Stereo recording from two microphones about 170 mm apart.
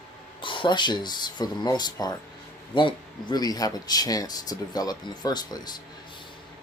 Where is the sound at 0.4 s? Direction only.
30° left (ahead or behind).